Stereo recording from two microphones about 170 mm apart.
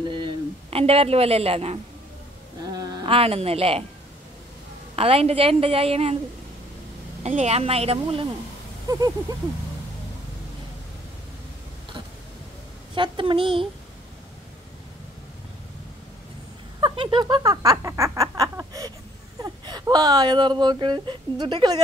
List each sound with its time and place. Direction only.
0.1 s speech: 30° right (ahead or behind)
2.6 s speech: 20° right (ahead or behind)
4.9 s a woman's voice: 35° right (ahead or behind)
7.2 s a woman's voice: 40° right (ahead or behind)
8.8 s a child's voice: 20° right (ahead or behind)
12.9 s a child's voice: 30° right (ahead or behind)
16.8 s a sound: 30° right (ahead or behind)
19.4 s speech: 25° right (ahead or behind)